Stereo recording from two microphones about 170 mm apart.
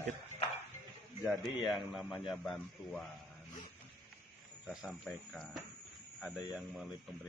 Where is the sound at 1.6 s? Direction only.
Centre (ahead or behind).